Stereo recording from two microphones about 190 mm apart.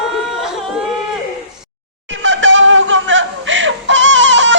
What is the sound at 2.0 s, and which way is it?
Music, 75° right (ahead or behind).